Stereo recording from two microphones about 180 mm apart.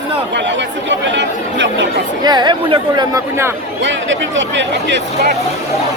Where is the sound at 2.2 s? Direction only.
25° right (ahead or behind).